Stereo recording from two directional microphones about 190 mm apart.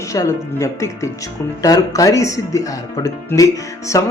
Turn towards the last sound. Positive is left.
turn(degrees=15)  # may be behind; listen again after turning